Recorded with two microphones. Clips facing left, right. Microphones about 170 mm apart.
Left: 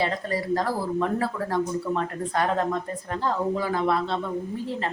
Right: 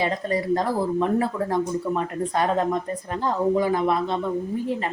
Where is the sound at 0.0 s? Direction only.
20° right (ahead or behind).